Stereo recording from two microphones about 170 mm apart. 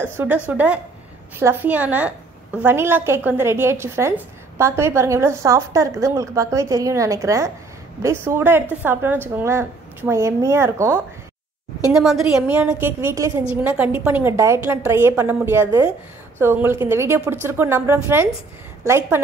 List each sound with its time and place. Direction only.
0.0 s a woman's voice: 10° right (ahead or behind)
11.9 s a woman's voice: centre (ahead or behind)